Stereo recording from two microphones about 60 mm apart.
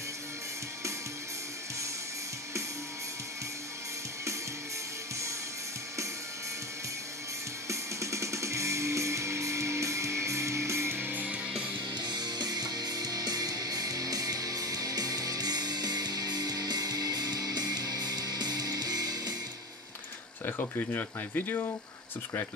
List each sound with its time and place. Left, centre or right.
7.6 s music: right
11.2 s music: centre
12.4 s music: right
20.4 s speech: left